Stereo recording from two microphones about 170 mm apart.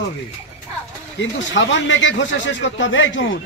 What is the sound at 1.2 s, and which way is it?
Speech, 90° left.